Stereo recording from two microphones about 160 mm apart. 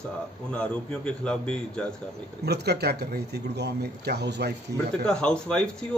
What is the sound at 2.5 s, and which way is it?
Speech, 90° right.